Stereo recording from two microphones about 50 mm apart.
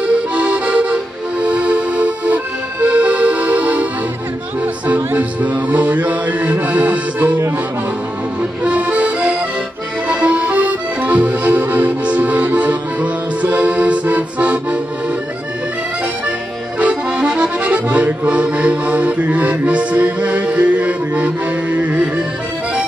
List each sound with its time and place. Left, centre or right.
0.0 s accordion: right
4.6 s music: right
8.4 s music: right
10.0 s accordion: right
16.8 s accordion: centre